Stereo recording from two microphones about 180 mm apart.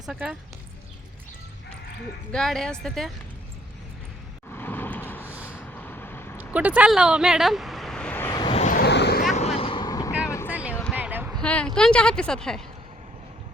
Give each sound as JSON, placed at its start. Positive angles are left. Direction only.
{"t": 0.0, "sound": "a woman's voice", "side_deg": -5}
{"t": 2.3, "sound": "a woman's voice", "side_deg": 0}
{"t": 4.4, "sound": "vehicle", "side_deg": 10}
{"t": 6.5, "sound": "speech", "side_deg": -10}
{"t": 8.3, "sound": "vehicle", "side_deg": 25}
{"t": 8.6, "sound": "vehicle", "side_deg": 55}
{"t": 9.3, "sound": "vehicle", "side_deg": 35}
{"t": 10.5, "sound": "a sound", "side_deg": -10}
{"t": 11.3, "sound": "a woman's voice", "side_deg": 5}